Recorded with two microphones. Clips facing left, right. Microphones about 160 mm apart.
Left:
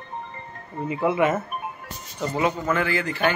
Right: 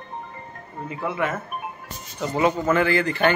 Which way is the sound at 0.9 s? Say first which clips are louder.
Left 5 dB; 10° left (ahead or behind).